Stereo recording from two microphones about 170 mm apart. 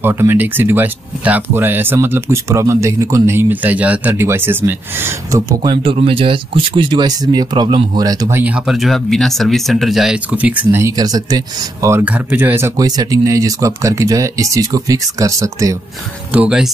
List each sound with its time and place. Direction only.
0.0 s speech: 15° right (ahead or behind)
16.3 s speech: 5° right (ahead or behind)